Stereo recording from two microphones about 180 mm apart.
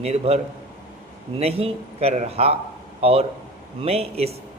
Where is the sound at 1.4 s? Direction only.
35° right (ahead or behind).